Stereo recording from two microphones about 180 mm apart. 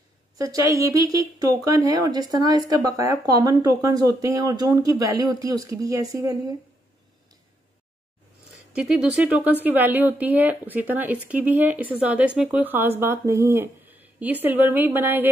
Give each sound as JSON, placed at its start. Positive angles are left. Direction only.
{"t": 0.4, "sound": "speech", "side_deg": -20}
{"t": 8.7, "sound": "a woman's voice", "side_deg": -5}